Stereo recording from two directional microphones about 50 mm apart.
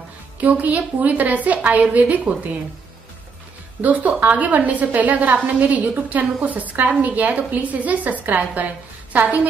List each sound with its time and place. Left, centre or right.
0.4 s a woman's voice: right
3.8 s a woman's voice: right